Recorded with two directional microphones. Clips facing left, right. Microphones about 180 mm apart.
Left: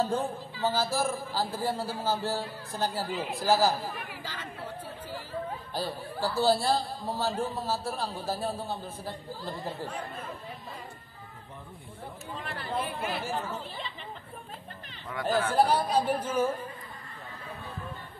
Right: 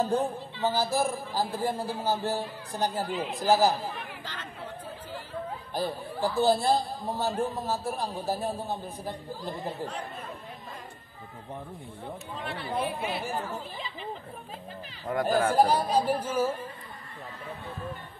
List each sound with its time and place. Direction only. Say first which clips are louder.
0.0 s a man's voice: right 2 dB; 20° right (ahead or behind)
3.1 s speech: right 1 dB; centre (ahead or behind)
3.3 s speech: right 2 dB; 20° right (ahead or behind)
3.7 s speech: right 1 dB; centre (ahead or behind)
5.8 s a man's voice: right 3 dB; 20° right (ahead or behind)
12.4 s speech: right 2 dB; centre (ahead or behind)
15.0 s speech: right 3 dB; 45° right (ahead or behind)
15.5 s a man's voice: left 1 dB; 10° right (ahead or behind)